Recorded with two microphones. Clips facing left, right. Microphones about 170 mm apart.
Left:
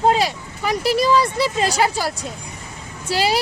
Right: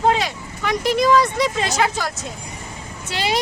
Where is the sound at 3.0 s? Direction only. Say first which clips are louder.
Left 5 dB; 35° left (ahead or behind).